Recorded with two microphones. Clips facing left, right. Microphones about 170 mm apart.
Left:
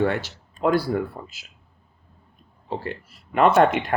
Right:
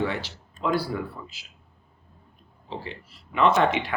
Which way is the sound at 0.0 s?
50° left (ahead or behind).